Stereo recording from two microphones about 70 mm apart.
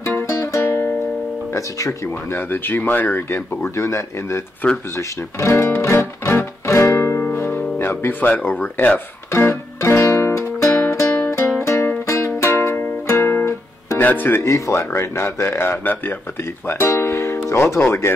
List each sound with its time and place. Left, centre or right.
0.0 s music: left
1.5 s speech: left
4.9 s music: left
9.3 s music: left
13.9 s speech: left
14.4 s speech: left